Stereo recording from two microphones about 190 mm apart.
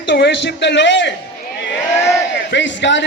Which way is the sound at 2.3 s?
70° left (ahead or behind).